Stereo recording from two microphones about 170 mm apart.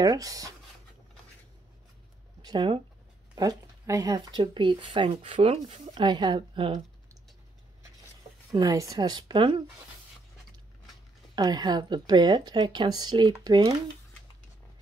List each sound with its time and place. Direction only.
0.0 s speech: 20° right (ahead or behind)
2.4 s speech: 30° right (ahead or behind)
8.5 s speech: 20° right (ahead or behind)
11.3 s speech: 25° right (ahead or behind)